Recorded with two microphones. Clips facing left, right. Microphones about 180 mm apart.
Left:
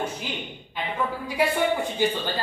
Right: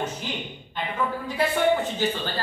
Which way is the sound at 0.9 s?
10° left (ahead or behind).